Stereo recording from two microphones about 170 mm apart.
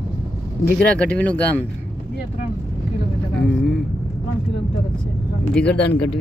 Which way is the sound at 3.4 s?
5° left (ahead or behind).